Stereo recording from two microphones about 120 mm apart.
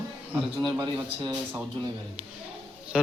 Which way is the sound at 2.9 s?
5° right (ahead or behind).